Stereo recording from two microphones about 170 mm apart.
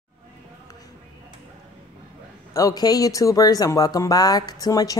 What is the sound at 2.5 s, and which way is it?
Speech, 20° left (ahead or behind).